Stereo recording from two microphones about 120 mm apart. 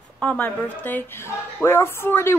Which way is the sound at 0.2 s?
10° left (ahead or behind).